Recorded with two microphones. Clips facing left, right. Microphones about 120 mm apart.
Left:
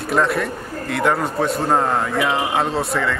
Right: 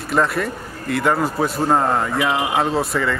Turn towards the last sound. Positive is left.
turn(degrees=0)  # may be behind; listen again after turning